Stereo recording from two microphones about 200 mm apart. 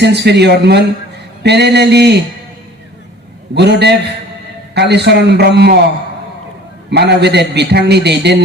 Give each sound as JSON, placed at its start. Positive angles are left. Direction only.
{"t": 0.0, "sound": "a man's voice", "side_deg": -55}
{"t": 3.5, "sound": "a man's voice", "side_deg": -55}
{"t": 6.9, "sound": "a man's voice", "side_deg": -55}